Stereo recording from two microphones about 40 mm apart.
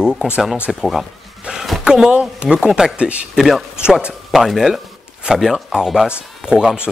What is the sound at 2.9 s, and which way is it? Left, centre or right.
Speech, right.